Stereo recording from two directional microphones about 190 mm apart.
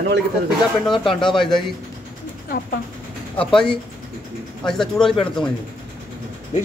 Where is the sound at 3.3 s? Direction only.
5° left (ahead or behind).